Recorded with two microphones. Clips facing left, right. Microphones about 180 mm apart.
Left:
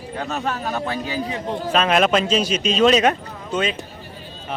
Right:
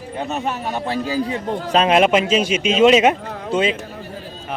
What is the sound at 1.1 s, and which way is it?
Speech, 40° right (ahead or behind).